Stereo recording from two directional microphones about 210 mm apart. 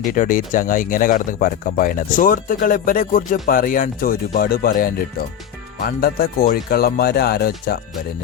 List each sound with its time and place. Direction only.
0.1 s speech: 40° left (ahead or behind)